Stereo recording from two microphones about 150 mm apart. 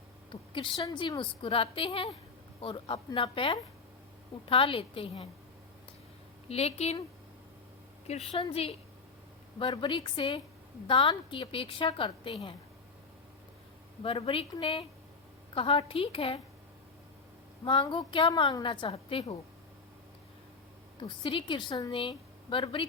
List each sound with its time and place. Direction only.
0.3 s a woman's voice: 35° left (ahead or behind)
6.5 s a woman's voice: 45° left (ahead or behind)
8.0 s a woman's voice: 45° left (ahead or behind)
9.6 s a woman's voice: 35° left (ahead or behind)
14.0 s a woman's voice: 35° left (ahead or behind)
17.7 s a woman's voice: 30° left (ahead or behind)
21.0 s a woman's voice: 35° left (ahead or behind)